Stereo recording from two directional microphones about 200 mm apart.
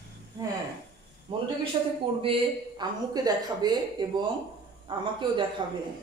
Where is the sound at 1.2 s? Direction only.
25° right (ahead or behind).